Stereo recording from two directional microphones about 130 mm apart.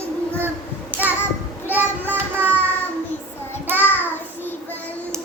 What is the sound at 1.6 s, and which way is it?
Child singing, 15° right (ahead or behind).